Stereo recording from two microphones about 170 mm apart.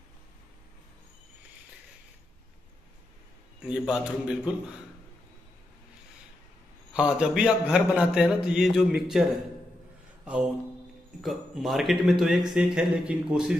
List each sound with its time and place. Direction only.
3.5 s a man's voice: 5° right (ahead or behind)
6.9 s a man's voice: 5° right (ahead or behind)
11.1 s a man's voice: centre (ahead or behind)